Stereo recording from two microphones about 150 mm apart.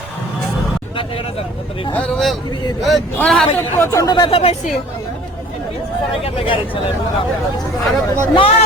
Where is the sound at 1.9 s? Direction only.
5° left (ahead or behind).